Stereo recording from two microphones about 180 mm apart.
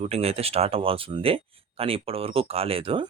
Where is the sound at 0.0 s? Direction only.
35° right (ahead or behind).